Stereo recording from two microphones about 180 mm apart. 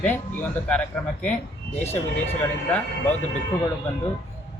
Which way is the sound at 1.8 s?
10° left (ahead or behind).